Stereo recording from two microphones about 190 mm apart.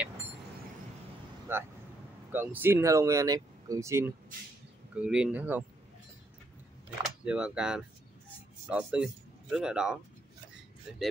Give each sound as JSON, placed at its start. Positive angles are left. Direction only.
{"t": 1.5, "sound": "speech", "side_deg": -10}
{"t": 7.2, "sound": "speech", "side_deg": -5}